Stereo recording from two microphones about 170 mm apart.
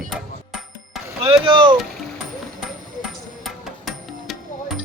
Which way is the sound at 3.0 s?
Centre (ahead or behind).